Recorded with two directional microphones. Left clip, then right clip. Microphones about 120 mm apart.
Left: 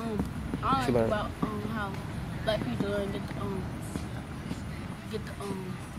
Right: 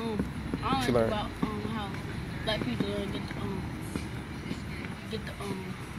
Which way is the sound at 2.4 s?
35° left (ahead or behind).